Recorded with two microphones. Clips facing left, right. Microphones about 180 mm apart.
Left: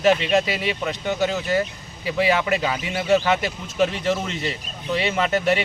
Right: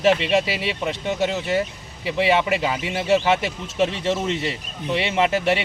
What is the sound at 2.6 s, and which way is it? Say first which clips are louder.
Speech: right 1 dB; 5° right (ahead or behind).